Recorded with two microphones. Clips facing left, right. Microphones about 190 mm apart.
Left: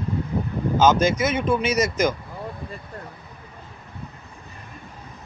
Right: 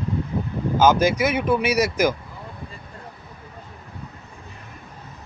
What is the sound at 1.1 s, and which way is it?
Speech, 65° right (ahead or behind).